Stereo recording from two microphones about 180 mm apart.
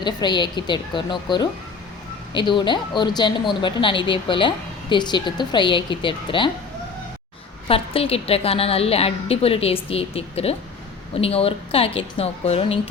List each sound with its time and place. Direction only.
0.0 s a woman's voice: 25° left (ahead or behind)
7.7 s a woman's voice: 30° left (ahead or behind)